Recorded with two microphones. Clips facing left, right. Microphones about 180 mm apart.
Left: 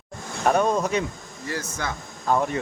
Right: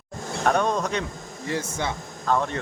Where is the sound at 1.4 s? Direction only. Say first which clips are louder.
Right 2 dB; 25° right (ahead or behind).